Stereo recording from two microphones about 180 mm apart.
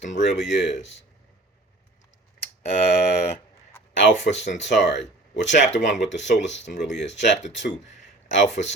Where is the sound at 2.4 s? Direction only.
50° left (ahead or behind).